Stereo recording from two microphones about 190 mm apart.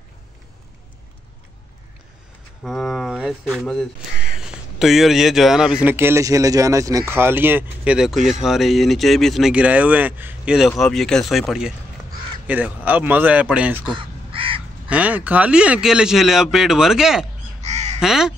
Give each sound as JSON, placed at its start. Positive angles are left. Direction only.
{"t": 2.6, "sound": "speech", "side_deg": 0}
{"t": 13.9, "sound": "crow", "side_deg": -30}
{"t": 14.9, "sound": "speech", "side_deg": -10}
{"t": 17.6, "sound": "crow", "side_deg": -35}
{"t": 18.0, "sound": "speech", "side_deg": -5}